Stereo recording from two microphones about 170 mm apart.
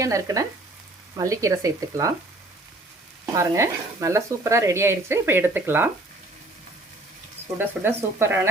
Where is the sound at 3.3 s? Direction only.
15° right (ahead or behind).